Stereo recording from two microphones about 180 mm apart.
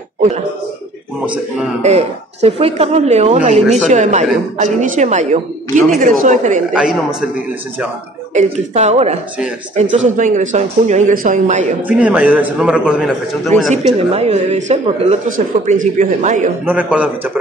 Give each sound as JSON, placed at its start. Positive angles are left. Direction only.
{"t": 1.2, "sound": "a man's voice", "side_deg": -5}
{"t": 1.8, "sound": "speech", "side_deg": -35}
{"t": 6.7, "sound": "a man's voice", "side_deg": -5}
{"t": 8.4, "sound": "speech", "side_deg": -40}
{"t": 12.0, "sound": "a man's voice", "side_deg": -5}
{"t": 13.8, "sound": "speech", "side_deg": -35}
{"t": 16.6, "sound": "a man's voice", "side_deg": -10}